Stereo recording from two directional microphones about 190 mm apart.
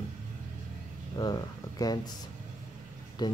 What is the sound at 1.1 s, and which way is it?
Speech, 20° left (ahead or behind).